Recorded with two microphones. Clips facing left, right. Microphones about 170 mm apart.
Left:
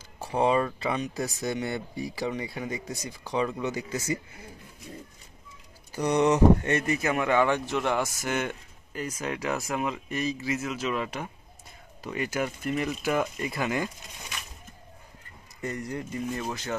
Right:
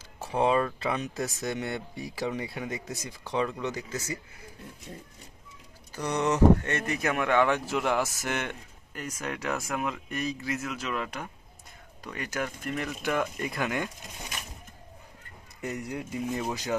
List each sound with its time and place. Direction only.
0.2 s speech: centre (ahead or behind)
5.9 s speech: 15° left (ahead or behind)
15.9 s speech: 10° right (ahead or behind)